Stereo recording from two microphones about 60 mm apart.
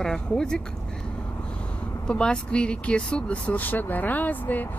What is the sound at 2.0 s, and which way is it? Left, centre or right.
Speech, centre.